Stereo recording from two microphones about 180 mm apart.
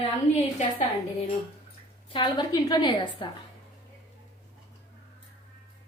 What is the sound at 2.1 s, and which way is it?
A woman's voice, 25° left (ahead or behind).